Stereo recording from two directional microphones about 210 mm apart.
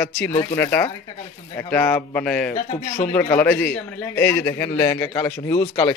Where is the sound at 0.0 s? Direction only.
10° left (ahead or behind).